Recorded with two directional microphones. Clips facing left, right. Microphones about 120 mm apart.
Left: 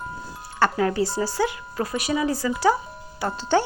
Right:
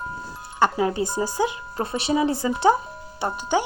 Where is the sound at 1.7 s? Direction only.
25° right (ahead or behind).